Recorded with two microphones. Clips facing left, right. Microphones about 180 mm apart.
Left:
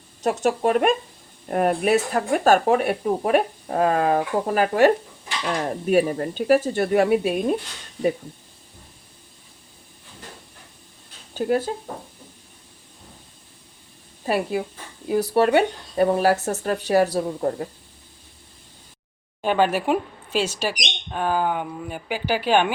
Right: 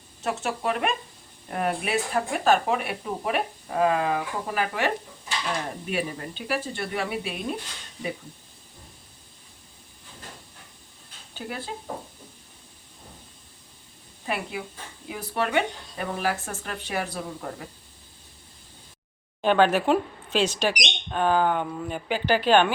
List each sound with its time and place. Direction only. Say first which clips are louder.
0.2 s speech: left 8 dB; 40° left (ahead or behind)
11.3 s speech: left 13 dB; 45° left (ahead or behind)
14.3 s speech: left 8 dB; 40° left (ahead or behind)
19.4 s speech: even; 10° left (ahead or behind)